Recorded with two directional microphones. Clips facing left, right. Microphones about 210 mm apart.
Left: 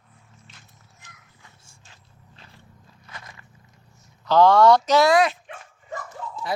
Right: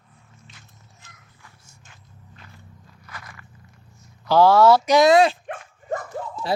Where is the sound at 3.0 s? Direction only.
25° left (ahead or behind).